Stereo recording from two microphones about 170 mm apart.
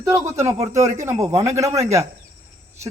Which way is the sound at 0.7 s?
40° right (ahead or behind).